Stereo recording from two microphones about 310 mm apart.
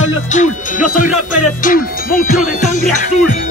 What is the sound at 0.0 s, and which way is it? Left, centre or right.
Speech, left.